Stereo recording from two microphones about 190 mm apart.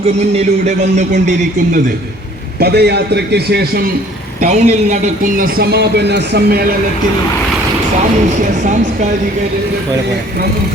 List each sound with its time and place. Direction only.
0.3 s speech: 40° right (ahead or behind)
2.6 s a man's voice: 60° right (ahead or behind)
4.4 s a man's voice: 40° right (ahead or behind); by 6.7 s 55° right (ahead or behind)
8.6 s speech: 40° right (ahead or behind)